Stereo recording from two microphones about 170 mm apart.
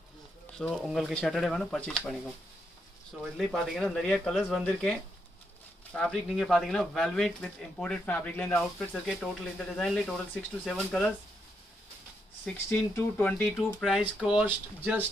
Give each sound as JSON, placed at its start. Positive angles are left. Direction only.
{"t": 0.6, "sound": "speech", "side_deg": 0}
{"t": 3.2, "sound": "speech", "side_deg": 0}
{"t": 5.9, "sound": "speech", "side_deg": 5}
{"t": 12.5, "sound": "speech", "side_deg": 5}